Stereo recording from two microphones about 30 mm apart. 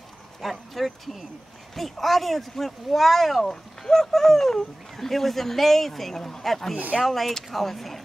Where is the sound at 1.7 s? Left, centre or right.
Centre.